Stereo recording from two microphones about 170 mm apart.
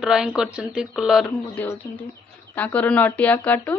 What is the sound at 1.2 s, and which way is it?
Speech, 10° left (ahead or behind).